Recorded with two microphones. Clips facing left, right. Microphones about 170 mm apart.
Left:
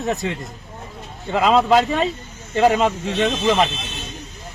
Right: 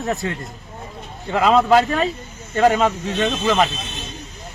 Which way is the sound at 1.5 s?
10° left (ahead or behind).